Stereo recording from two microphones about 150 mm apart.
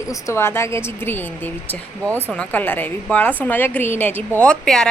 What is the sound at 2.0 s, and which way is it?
Speech, 15° right (ahead or behind).